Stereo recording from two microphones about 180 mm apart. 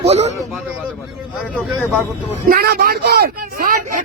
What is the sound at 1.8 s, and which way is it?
Speech, 5° left (ahead or behind).